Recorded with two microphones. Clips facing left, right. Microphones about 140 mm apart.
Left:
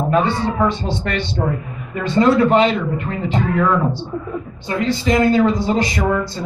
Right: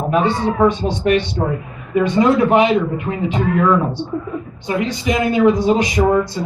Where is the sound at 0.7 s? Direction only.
15° right (ahead or behind).